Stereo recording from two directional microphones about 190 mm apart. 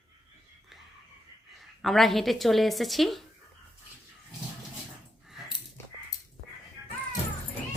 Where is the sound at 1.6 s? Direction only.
Centre (ahead or behind).